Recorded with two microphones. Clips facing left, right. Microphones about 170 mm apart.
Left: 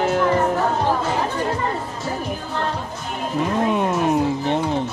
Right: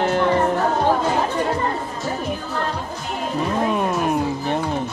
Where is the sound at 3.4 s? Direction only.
20° left (ahead or behind).